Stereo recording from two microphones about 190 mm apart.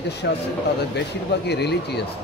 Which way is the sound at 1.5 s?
60° left (ahead or behind).